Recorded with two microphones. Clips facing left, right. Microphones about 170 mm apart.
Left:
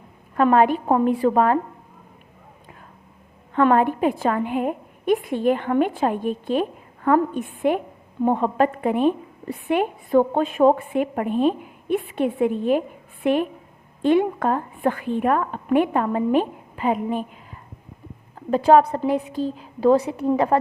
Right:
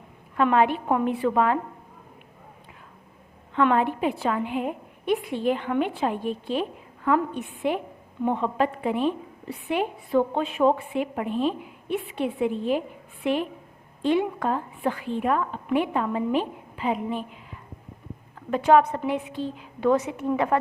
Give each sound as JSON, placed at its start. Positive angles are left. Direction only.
{"t": 0.3, "sound": "a woman's voice", "side_deg": 45}
{"t": 3.5, "sound": "a woman's voice", "side_deg": 45}
{"t": 18.3, "sound": "a woman's voice", "side_deg": 35}